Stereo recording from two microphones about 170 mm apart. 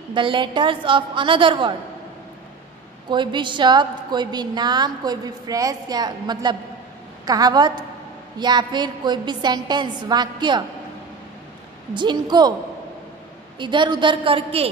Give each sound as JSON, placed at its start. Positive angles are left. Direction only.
{"t": 0.1, "sound": "a woman's voice", "side_deg": -30}
{"t": 3.1, "sound": "a woman's voice", "side_deg": -25}
{"t": 11.9, "sound": "a woman's voice", "side_deg": -25}
{"t": 13.6, "sound": "a woman's voice", "side_deg": -25}